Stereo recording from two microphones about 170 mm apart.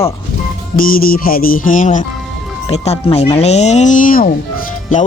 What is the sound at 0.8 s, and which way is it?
Music, 55° left (ahead or behind).